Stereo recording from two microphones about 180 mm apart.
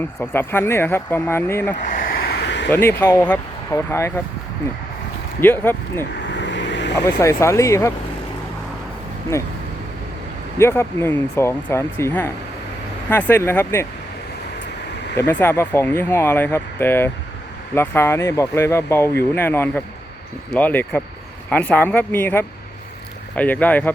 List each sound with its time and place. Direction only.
0.0 s speech: 10° left (ahead or behind)
1.8 s a sound: 50° left (ahead or behind); by 2.6 s 70° left (ahead or behind)
2.6 s speech: 10° left (ahead or behind)
5.4 s speech: 10° left (ahead or behind)
6.1 s vehicle: 75° left (ahead or behind)
7.2 s speech: 15° left (ahead or behind)
9.3 s speech: 15° left (ahead or behind)
10.6 s speech: 15° left (ahead or behind)
15.2 s speech: 10° left (ahead or behind)